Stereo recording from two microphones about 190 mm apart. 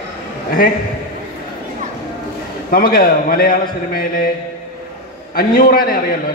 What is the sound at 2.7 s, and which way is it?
Mantra, 50° left (ahead or behind).